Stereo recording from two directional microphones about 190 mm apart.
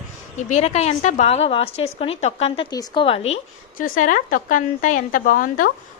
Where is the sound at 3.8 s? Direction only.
45° left (ahead or behind).